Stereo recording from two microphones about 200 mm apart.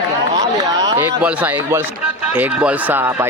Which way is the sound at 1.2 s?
5° right (ahead or behind).